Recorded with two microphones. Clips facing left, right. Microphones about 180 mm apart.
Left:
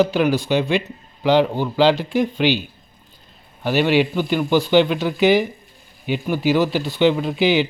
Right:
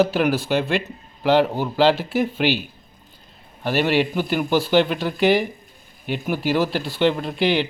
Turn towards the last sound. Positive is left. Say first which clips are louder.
# left 3 dB
turn(degrees=0)  # may be behind; listen again after turning